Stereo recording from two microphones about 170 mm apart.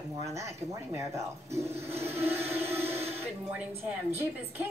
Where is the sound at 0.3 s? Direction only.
15° right (ahead or behind).